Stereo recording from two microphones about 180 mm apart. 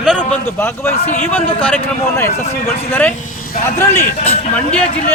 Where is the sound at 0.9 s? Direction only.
35° left (ahead or behind).